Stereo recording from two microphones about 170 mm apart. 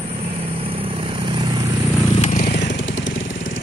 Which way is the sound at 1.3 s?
25° right (ahead or behind).